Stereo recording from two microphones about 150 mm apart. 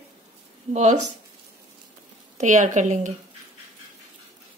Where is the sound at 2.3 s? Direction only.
55° right (ahead or behind).